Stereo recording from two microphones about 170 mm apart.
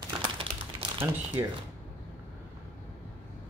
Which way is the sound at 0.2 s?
30° right (ahead or behind).